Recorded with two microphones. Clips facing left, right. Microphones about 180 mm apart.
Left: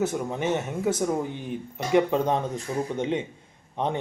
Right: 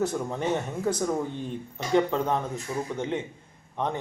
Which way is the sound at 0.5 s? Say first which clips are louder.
Left 2 dB; 20° left (ahead or behind).